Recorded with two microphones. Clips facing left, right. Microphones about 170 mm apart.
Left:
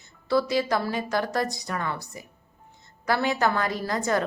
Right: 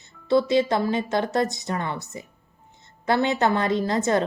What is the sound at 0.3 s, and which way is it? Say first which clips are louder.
A woman's voice: right 4 dB; 25° right (ahead or behind).